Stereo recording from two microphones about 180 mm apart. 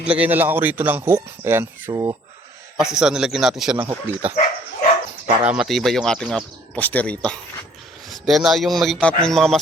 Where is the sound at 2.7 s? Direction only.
5° right (ahead or behind).